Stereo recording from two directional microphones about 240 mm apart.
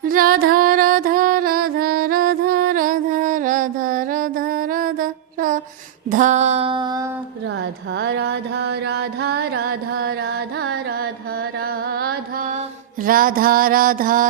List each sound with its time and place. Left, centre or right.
0.1 s female singing: right
6.1 s a sound: right
7.4 s music: right